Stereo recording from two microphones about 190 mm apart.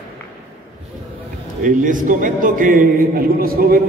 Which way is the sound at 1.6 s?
45° right (ahead or behind).